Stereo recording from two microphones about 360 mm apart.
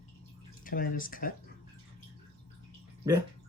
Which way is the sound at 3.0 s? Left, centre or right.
Centre.